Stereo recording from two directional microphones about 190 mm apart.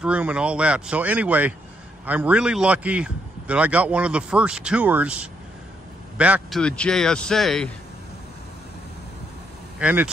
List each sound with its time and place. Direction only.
0.0 s a man's voice: 5° right (ahead or behind)
6.6 s speech: 5° left (ahead or behind)
9.8 s speech: 5° right (ahead or behind)